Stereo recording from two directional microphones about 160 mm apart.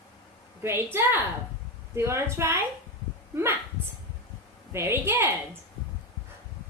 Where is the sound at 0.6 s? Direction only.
15° right (ahead or behind).